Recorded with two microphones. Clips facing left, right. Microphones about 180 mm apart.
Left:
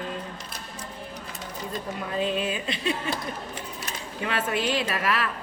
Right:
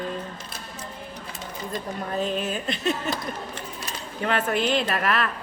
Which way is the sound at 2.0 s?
40° right (ahead or behind).